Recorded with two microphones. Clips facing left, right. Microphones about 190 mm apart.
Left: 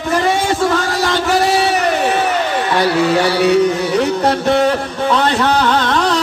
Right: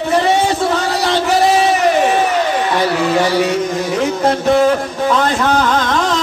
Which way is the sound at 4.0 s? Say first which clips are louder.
Right 3 dB; 30° left (ahead or behind).